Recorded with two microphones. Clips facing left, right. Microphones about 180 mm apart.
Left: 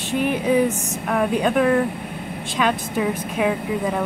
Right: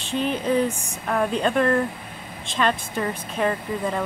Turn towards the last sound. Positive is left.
turn(degrees=5)  # may be behind; listen again after turning